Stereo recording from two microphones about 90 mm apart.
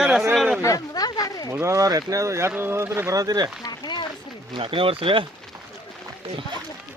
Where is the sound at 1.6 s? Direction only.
35° right (ahead or behind).